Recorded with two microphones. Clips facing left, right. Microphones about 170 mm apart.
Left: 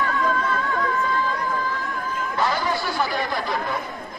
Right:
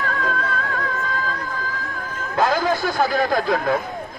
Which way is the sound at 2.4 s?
90° right.